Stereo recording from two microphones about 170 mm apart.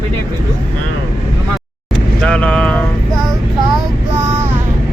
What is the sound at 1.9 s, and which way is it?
Speech, 5° left (ahead or behind).